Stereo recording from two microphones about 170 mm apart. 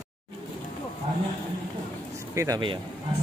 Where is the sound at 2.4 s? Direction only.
25° right (ahead or behind).